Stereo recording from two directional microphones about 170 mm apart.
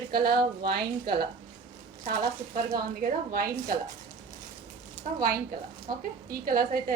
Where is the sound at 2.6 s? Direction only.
55° right (ahead or behind).